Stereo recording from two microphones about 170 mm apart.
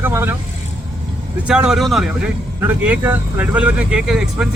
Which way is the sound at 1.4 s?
5° right (ahead or behind).